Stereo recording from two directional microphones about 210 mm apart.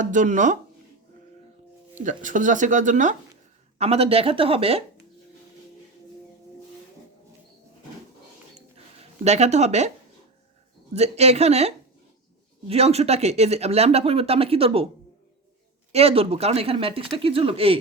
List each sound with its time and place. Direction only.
0.0 s speech: 35° right (ahead or behind)
2.0 s speech: 35° right (ahead or behind)
9.2 s speech: 30° right (ahead or behind)
10.9 s speech: 30° right (ahead or behind)
15.9 s speech: 30° right (ahead or behind)